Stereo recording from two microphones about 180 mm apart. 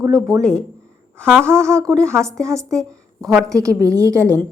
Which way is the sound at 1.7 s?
15° right (ahead or behind).